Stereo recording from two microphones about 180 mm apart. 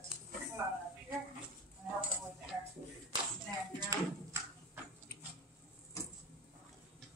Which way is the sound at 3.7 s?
20° right (ahead or behind).